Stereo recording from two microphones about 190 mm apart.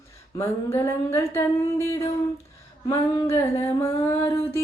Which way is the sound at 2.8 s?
20° left (ahead or behind).